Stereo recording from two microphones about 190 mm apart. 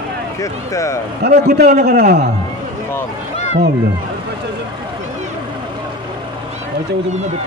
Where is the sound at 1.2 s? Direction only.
55° right (ahead or behind).